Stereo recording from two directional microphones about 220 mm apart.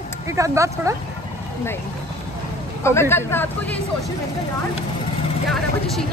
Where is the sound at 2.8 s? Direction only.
10° left (ahead or behind).